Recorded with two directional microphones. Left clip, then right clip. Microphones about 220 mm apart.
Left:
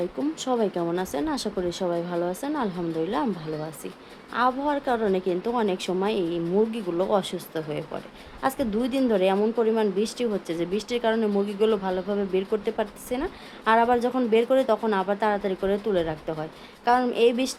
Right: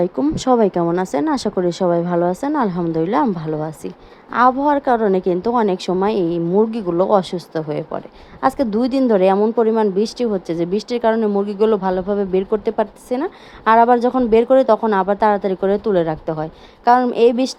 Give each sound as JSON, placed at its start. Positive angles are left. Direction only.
{"t": 0.2, "sound": "a woman's voice", "side_deg": -25}